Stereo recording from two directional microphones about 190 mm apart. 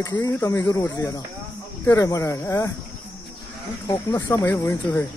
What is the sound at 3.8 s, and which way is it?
Speech, 20° left (ahead or behind).